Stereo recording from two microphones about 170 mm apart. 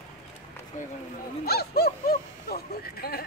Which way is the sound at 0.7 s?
50° left (ahead or behind).